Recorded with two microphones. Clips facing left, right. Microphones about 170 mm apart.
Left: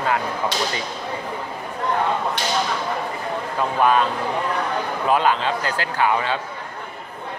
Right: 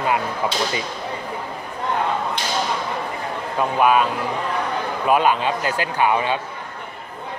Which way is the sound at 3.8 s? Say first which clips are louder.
Right 1 dB; 10° right (ahead or behind).